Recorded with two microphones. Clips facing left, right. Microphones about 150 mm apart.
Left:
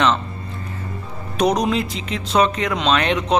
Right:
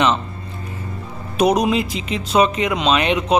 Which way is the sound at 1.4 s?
5° right (ahead or behind).